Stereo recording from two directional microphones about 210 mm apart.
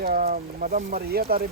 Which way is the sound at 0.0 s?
45° right (ahead or behind).